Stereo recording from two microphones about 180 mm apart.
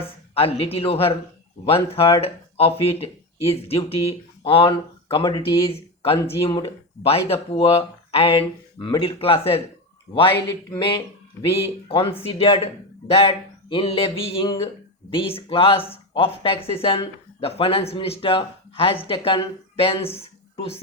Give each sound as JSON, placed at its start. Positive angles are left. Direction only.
{"t": 0.3, "sound": "speech", "side_deg": 30}
{"t": 10.8, "sound": "speech", "side_deg": 25}